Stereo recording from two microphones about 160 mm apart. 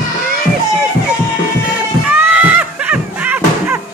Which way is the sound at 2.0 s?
10° right (ahead or behind).